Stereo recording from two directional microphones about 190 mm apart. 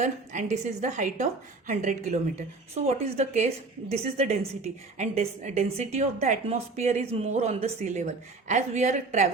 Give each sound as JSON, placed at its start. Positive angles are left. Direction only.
{"t": 0.0, "sound": "a woman's voice", "side_deg": -40}